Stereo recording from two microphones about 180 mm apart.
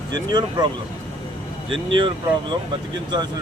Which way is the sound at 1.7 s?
30° right (ahead or behind).